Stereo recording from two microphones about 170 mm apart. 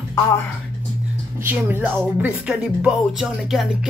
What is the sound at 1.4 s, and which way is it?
Speech, 10° right (ahead or behind).